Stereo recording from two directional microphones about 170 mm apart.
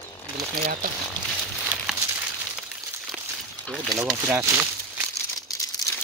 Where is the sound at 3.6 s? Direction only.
5° left (ahead or behind).